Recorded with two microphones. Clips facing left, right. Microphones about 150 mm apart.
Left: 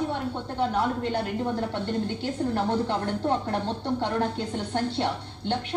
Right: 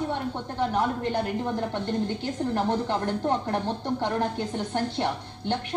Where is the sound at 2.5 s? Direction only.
15° right (ahead or behind).